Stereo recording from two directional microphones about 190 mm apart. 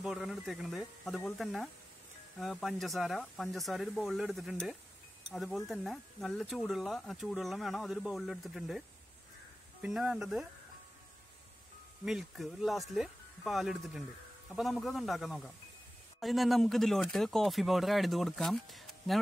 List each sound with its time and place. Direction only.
0.0 s speech: centre (ahead or behind)
12.0 s speech: centre (ahead or behind)